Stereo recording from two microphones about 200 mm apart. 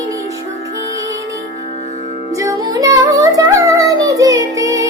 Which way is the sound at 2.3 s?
15° right (ahead or behind).